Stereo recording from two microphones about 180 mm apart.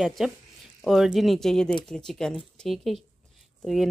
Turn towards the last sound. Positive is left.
turn(degrees=0)  # may be behind; listen again after turning